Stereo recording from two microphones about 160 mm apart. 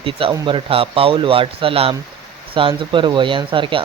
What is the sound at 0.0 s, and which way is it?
Speech, 35° right (ahead or behind).